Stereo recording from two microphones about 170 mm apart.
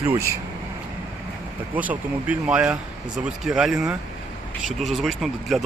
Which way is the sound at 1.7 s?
10° right (ahead or behind).